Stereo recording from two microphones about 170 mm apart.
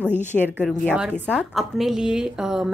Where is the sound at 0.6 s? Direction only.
5° right (ahead or behind).